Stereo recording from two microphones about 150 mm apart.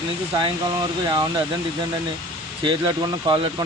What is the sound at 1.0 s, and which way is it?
Speech, 30° right (ahead or behind).